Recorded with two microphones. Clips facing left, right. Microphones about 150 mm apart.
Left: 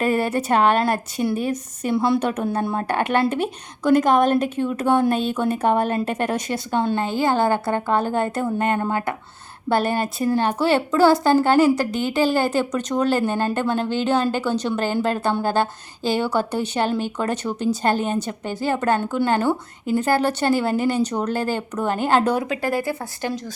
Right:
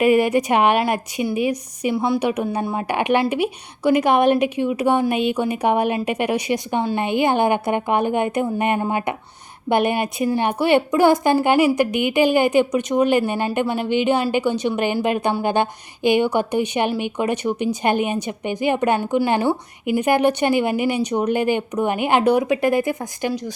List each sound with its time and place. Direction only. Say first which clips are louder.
0.0 s a woman's voice: right 5 dB; 15° right (ahead or behind)